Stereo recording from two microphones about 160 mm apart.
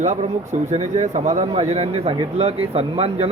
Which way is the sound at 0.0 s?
45° right (ahead or behind).